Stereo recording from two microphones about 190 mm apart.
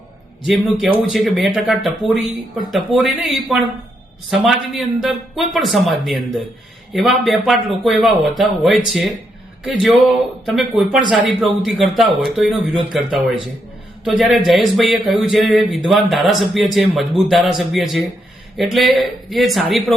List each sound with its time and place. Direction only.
0.4 s speech: centre (ahead or behind)
10.4 s speech: centre (ahead or behind)